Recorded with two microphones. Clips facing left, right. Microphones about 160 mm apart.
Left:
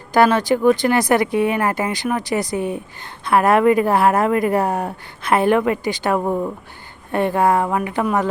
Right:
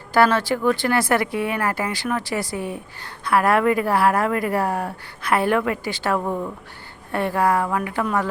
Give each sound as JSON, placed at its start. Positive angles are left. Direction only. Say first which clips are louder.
{"t": 0.1, "sound": "speech", "louder": "left 3 dB", "side_deg": 15}